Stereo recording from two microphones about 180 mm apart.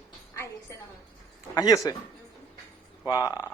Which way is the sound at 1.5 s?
20° left (ahead or behind).